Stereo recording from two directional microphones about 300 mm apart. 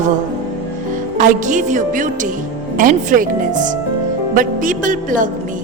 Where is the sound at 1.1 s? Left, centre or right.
Right.